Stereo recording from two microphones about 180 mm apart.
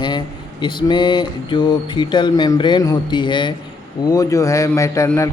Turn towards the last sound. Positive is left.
turn(degrees=15)  # may be behind; listen again after turning